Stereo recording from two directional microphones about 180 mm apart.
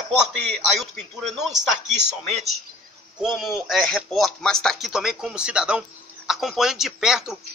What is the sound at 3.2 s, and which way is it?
Speech, centre (ahead or behind).